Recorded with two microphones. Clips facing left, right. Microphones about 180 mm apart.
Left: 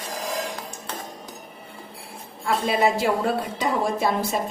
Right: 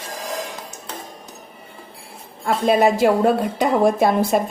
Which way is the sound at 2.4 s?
50° right (ahead or behind).